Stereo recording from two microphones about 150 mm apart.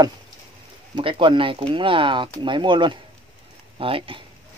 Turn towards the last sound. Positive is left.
turn(degrees=-35)  # may be behind; listen again after turning